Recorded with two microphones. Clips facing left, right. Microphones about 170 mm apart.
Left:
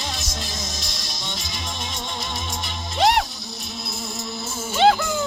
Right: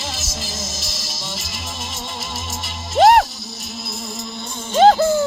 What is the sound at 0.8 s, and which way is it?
Music, 5° right (ahead or behind).